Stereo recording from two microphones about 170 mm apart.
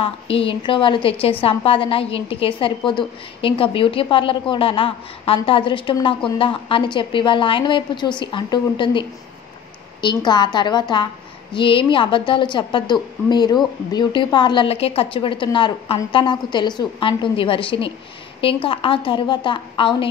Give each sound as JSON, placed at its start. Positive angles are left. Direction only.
{"t": 0.0, "sound": "a woman's voice", "side_deg": 35}
{"t": 10.0, "sound": "a woman's voice", "side_deg": 25}